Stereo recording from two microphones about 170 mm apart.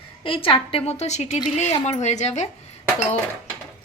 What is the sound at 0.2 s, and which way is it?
A woman's voice, 30° left (ahead or behind).